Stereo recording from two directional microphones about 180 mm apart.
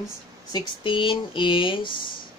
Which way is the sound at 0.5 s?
25° left (ahead or behind).